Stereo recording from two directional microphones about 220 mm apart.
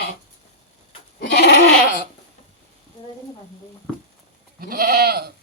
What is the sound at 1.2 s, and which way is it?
Goat, 50° left (ahead or behind).